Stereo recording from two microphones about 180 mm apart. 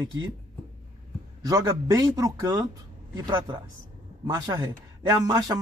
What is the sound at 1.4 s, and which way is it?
Speech, 20° right (ahead or behind).